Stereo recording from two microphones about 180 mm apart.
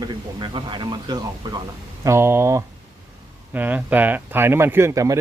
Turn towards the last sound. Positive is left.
turn(degrees=-20)  # may be behind; listen again after turning